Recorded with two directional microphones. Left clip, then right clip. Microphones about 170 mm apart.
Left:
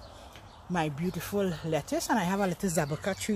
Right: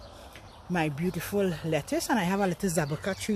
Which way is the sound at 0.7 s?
15° right (ahead or behind).